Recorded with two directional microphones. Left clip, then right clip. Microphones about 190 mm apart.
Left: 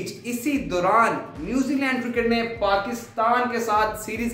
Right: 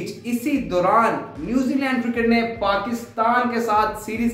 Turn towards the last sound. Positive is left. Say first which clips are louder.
# right 2 dB
turn(degrees=15)  # may be behind; listen again after turning